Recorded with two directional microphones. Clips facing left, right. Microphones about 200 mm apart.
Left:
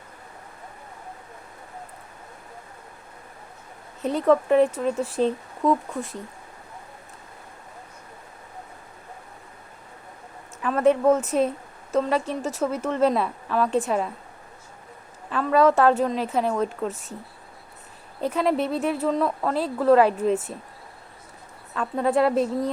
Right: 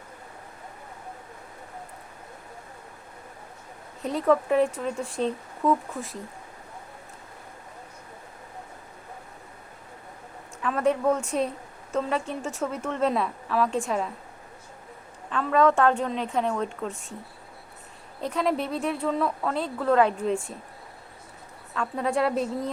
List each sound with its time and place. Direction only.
4.0 s speech: centre (ahead or behind)
10.6 s a woman's voice: centre (ahead or behind)
12.4 s speech: 40° left (ahead or behind)
12.6 s speech: centre (ahead or behind)
15.3 s speech: 5° left (ahead or behind)
18.3 s speech: centre (ahead or behind)
21.8 s speech: centre (ahead or behind)